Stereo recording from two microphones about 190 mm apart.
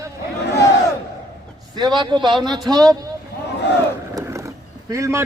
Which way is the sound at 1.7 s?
20° right (ahead or behind).